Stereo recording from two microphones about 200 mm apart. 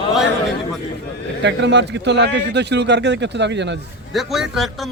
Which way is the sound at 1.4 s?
60° right (ahead or behind).